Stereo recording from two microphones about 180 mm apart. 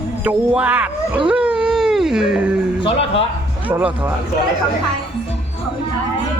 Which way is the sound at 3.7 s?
10° right (ahead or behind).